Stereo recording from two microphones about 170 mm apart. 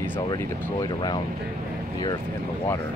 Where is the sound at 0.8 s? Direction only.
25° left (ahead or behind).